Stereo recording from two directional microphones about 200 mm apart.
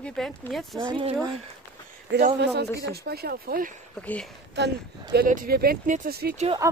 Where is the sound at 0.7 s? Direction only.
25° right (ahead or behind).